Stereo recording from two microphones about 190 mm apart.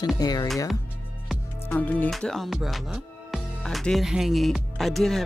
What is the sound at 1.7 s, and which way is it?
Music, 10° left (ahead or behind).